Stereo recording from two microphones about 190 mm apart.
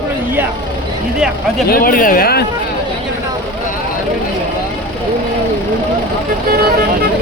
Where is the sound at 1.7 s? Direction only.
50° left (ahead or behind).